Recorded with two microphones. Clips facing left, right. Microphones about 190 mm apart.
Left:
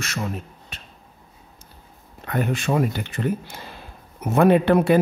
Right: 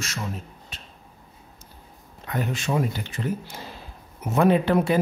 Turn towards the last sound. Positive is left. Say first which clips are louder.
# left 4 dB
turn(degrees=60)  # may be behind; listen again after turning